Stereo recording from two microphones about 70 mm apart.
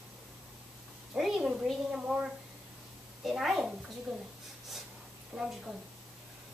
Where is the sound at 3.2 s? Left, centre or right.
Centre.